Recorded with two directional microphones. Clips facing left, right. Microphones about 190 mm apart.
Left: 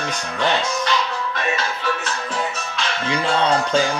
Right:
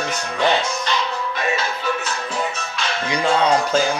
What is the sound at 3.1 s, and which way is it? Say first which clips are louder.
Speech: right 2 dB; 15° right (ahead or behind).